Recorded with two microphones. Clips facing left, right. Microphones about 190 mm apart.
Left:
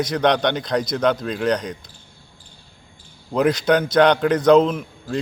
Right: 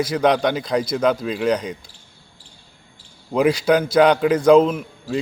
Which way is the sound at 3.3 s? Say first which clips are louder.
Right 1 dB; 5° right (ahead or behind).